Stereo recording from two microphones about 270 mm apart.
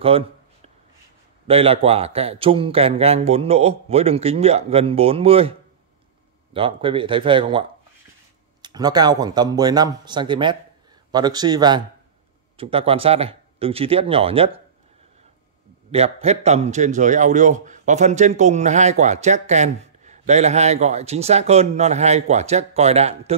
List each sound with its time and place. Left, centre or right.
0.0 s a sound: right
1.5 s a man's voice: right
8.6 s a man's voice: centre
15.9 s a man's voice: right